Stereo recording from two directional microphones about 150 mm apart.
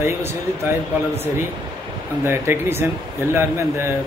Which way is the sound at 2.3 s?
15° right (ahead or behind).